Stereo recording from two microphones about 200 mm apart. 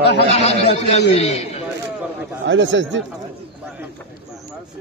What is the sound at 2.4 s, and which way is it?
Speech, 65° right (ahead or behind).